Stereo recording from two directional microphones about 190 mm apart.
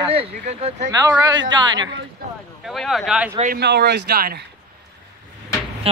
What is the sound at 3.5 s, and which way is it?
Speech, 60° right (ahead or behind).